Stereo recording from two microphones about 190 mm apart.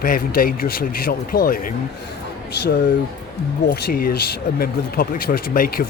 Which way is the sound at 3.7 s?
55° left (ahead or behind).